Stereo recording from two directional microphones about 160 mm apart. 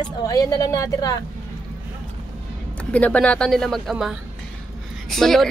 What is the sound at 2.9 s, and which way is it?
Speech, 10° left (ahead or behind).